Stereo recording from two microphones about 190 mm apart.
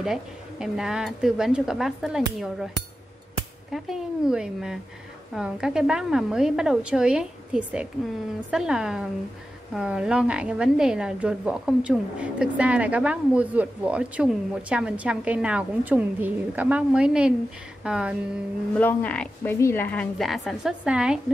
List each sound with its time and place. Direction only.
0.0 s a woman's voice: 5° right (ahead or behind)
3.7 s a woman's voice: 5° right (ahead or behind)
18.8 s a woman's voice: 10° left (ahead or behind)